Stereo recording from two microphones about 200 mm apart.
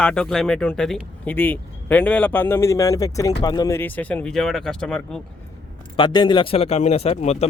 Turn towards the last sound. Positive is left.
turn(degrees=30)  # may be behind; listen again after turning